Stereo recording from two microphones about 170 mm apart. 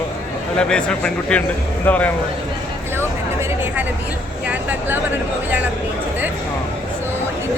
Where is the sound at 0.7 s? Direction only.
5° left (ahead or behind).